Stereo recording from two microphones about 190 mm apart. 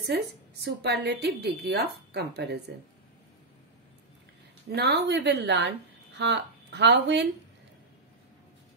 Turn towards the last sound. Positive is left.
turn(degrees=-65)  # may be behind; listen again after turning